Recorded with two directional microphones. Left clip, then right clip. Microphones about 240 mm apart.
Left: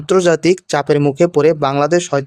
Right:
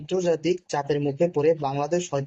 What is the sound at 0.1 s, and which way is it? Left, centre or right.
Speech, left.